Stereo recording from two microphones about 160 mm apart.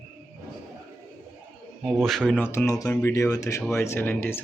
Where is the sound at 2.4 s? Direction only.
15° left (ahead or behind).